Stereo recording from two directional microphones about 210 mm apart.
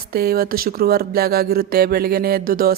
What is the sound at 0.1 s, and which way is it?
Speech, 45° right (ahead or behind).